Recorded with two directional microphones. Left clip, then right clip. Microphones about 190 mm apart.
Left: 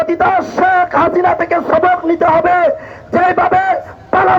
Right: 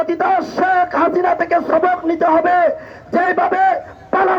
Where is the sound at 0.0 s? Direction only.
30° right (ahead or behind).